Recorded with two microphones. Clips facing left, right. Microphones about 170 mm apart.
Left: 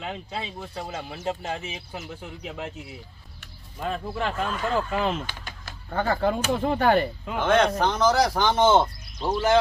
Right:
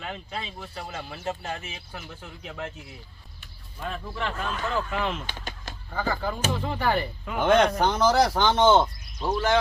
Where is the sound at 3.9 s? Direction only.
40° left (ahead or behind).